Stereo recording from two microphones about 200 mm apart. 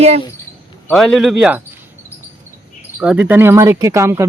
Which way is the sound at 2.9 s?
10° right (ahead or behind).